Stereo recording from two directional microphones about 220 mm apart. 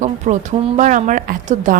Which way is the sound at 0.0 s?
30° right (ahead or behind).